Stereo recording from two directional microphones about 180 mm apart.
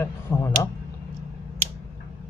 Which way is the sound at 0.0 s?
15° left (ahead or behind).